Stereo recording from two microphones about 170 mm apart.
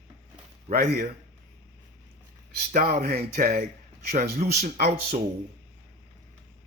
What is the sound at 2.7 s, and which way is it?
Speech, 65° right (ahead or behind).